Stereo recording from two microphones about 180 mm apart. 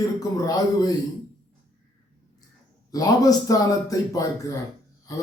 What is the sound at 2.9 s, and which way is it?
A man's voice, 20° left (ahead or behind).